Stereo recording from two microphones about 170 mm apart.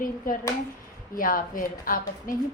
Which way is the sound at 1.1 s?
55° left (ahead or behind).